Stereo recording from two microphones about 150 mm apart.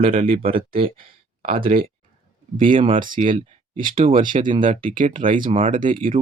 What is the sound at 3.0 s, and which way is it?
Speech, 65° right (ahead or behind).